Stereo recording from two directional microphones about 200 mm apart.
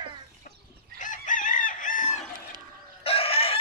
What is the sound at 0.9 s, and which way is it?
Chicken, 40° left (ahead or behind).